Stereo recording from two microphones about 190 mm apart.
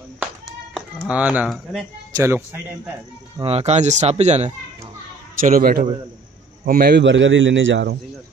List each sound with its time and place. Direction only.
0.7 s speech: 5° right (ahead or behind)
2.1 s a man's voice: 15° right (ahead or behind)
3.3 s speech: 30° right (ahead or behind)
5.4 s a man's voice: 50° right (ahead or behind); by 8.0 s 65° right (ahead or behind)